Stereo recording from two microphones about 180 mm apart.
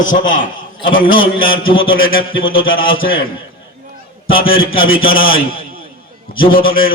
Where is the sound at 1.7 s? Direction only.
30° left (ahead or behind).